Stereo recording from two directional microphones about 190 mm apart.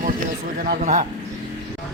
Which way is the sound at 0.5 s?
55° right (ahead or behind).